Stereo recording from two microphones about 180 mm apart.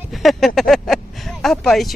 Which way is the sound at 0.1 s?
Centre (ahead or behind).